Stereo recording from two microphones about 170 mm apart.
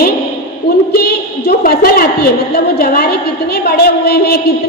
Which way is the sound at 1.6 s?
65° left (ahead or behind).